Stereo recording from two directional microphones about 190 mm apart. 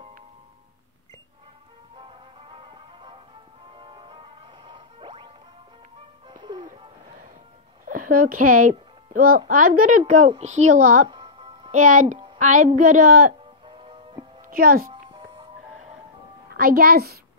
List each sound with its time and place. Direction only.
2.0 s music: 25° right (ahead or behind)
7.9 s a child's voice: 45° right (ahead or behind)
11.1 s music: 25° right (ahead or behind)
11.7 s speech: 45° right (ahead or behind)
13.7 s music: 25° right (ahead or behind)
14.5 s a child's voice: 50° right (ahead or behind)
14.9 s music: 25° right (ahead or behind)
16.5 s speech: 50° right (ahead or behind)